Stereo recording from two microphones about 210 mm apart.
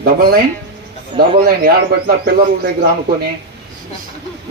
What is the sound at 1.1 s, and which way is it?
Speech, 25° right (ahead or behind).